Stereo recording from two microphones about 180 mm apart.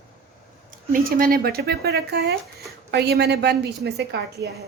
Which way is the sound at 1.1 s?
55° right (ahead or behind).